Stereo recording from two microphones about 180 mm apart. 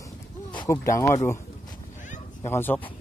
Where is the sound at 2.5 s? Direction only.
10° left (ahead or behind).